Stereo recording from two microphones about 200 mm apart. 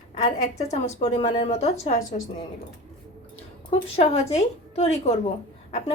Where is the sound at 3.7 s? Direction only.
30° left (ahead or behind).